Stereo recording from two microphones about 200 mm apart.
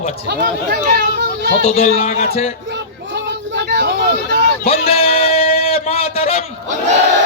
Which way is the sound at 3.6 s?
55° right (ahead or behind).